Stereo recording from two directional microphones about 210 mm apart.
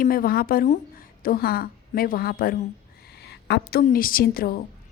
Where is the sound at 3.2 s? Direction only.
50° left (ahead or behind).